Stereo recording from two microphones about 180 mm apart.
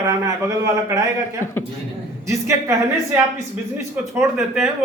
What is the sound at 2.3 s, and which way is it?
Speech, 15° right (ahead or behind).